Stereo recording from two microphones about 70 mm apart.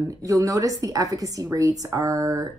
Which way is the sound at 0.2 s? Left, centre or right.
Right.